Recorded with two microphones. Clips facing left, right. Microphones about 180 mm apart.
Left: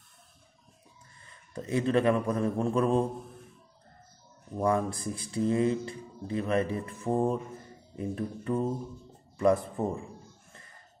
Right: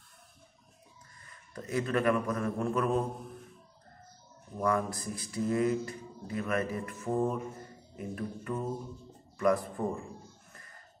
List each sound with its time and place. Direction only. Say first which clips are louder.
1.2 s speech: left 4 dB; 25° left (ahead or behind)
4.6 s speech: left 3 dB; 25° left (ahead or behind)